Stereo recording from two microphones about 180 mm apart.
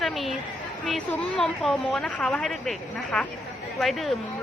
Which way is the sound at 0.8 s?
5° left (ahead or behind).